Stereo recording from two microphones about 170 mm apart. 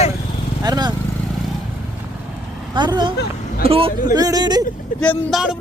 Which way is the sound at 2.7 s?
25° right (ahead or behind).